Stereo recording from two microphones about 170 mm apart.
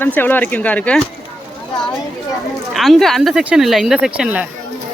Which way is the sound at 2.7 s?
Centre (ahead or behind).